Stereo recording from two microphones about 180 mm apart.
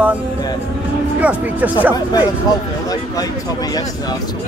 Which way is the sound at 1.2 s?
10° right (ahead or behind).